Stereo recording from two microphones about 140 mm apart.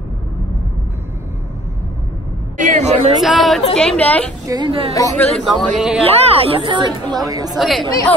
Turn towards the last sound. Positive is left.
turn(degrees=0)  # may be behind; listen again after turning